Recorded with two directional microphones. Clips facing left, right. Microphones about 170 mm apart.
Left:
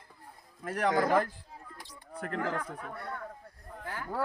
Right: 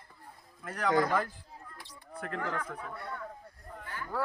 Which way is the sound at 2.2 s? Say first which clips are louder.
Left 2 dB; 40° left (ahead or behind).